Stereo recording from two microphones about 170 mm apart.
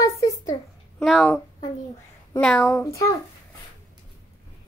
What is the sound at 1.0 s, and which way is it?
Speech, centre (ahead or behind).